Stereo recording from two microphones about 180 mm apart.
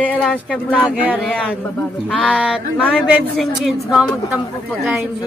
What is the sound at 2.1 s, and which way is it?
Speech, 5° left (ahead or behind).